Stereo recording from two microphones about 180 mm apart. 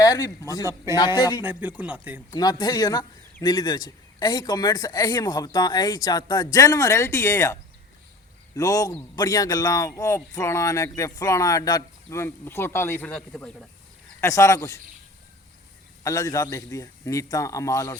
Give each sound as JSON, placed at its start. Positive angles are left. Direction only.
{"t": 0.0, "sound": "a man's voice", "side_deg": 20}
{"t": 1.4, "sound": "speech", "side_deg": -10}
{"t": 2.3, "sound": "a man's voice", "side_deg": 20}
{"t": 14.2, "sound": "speech", "side_deg": 15}
{"t": 16.0, "sound": "speech", "side_deg": 20}